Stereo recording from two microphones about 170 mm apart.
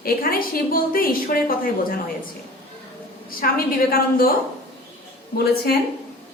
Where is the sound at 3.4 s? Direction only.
60° left (ahead or behind).